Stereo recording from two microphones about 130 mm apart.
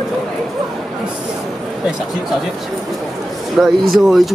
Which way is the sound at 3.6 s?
5° right (ahead or behind).